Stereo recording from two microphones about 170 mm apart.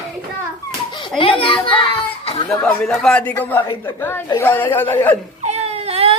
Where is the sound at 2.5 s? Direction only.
5° left (ahead or behind).